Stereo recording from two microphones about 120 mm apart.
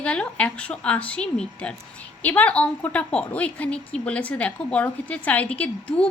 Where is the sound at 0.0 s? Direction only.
10° left (ahead or behind).